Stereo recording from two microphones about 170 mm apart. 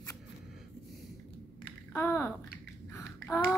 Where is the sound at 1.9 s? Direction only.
15° left (ahead or behind).